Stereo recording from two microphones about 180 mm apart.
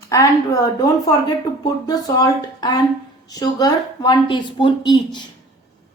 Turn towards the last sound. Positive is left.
turn(degrees=25)  # may be behind; listen again after turning